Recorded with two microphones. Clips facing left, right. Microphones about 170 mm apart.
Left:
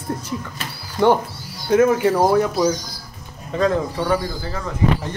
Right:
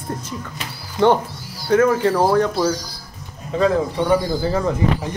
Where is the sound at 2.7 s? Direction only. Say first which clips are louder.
Left 1 dB; 35° right (ahead or behind).